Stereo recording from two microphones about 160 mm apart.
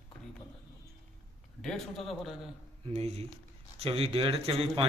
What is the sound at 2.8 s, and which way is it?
A man's voice, 40° right (ahead or behind).